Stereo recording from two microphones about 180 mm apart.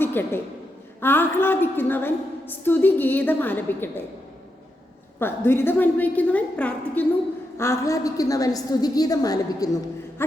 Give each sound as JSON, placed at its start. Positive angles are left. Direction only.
{"t": 0.0, "sound": "a sound", "side_deg": 10}
{"t": 1.0, "sound": "a woman's voice", "side_deg": 10}
{"t": 5.2, "sound": "a woman's voice", "side_deg": 10}